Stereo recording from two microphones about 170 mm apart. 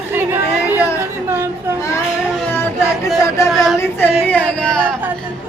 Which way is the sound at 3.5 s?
Centre (ahead or behind).